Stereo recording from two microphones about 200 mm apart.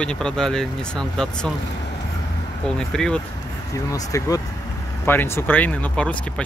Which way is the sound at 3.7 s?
15° left (ahead or behind).